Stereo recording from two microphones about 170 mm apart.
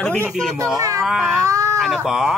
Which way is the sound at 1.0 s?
Centre (ahead or behind).